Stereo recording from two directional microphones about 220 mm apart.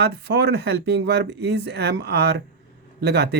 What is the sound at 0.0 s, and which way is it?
Speech, 50° right (ahead or behind).